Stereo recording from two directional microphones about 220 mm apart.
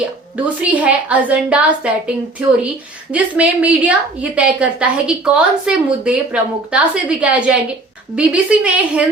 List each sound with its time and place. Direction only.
0.0 s a woman's voice: 5° right (ahead or behind)
3.1 s a woman's voice: 5° right (ahead or behind)